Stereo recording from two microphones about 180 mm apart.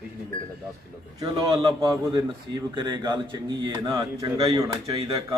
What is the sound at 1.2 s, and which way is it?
A man's voice, 25° right (ahead or behind).